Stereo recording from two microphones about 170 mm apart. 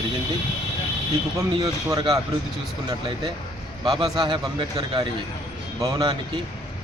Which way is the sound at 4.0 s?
25° right (ahead or behind).